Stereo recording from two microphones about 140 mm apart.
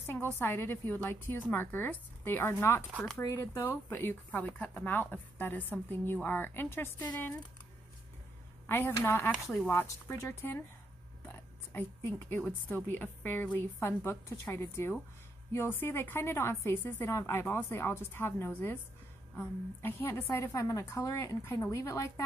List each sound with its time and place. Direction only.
0.0 s speech: 15° left (ahead or behind)
8.6 s a woman's voice: 15° left (ahead or behind)